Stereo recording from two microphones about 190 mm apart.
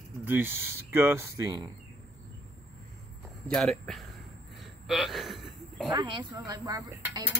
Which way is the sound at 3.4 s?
Centre (ahead or behind).